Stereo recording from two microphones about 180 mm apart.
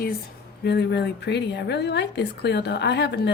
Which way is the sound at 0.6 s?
70° left (ahead or behind).